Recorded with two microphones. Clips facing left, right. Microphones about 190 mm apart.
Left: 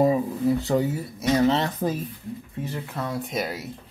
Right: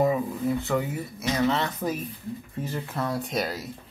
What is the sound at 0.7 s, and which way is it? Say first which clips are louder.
Speech: left 4 dB; 30° left (ahead or behind).